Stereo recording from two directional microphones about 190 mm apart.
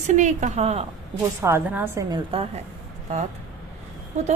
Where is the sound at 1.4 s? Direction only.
10° right (ahead or behind).